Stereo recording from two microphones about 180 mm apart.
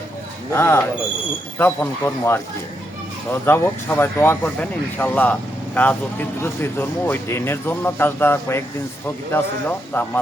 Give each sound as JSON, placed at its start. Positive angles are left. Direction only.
{"t": 0.5, "sound": "speech", "side_deg": 15}
{"t": 3.4, "sound": "speech", "side_deg": 15}